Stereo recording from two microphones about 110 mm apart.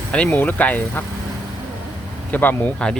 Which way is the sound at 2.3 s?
15° left (ahead or behind).